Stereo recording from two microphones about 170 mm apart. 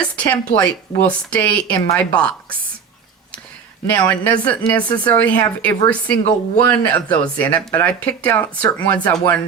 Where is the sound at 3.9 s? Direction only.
10° left (ahead or behind).